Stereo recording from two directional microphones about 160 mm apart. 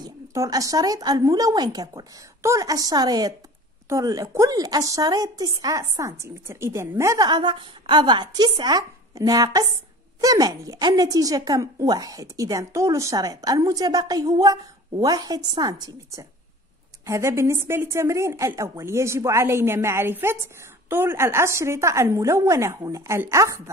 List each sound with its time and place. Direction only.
0.0 s a woman's voice: 20° right (ahead or behind)